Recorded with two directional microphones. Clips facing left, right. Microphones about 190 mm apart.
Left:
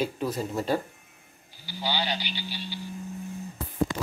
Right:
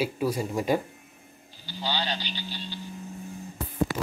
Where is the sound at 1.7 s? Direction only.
10° left (ahead or behind).